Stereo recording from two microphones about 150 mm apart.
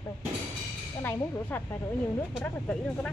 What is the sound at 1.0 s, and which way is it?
Speech, 15° left (ahead or behind).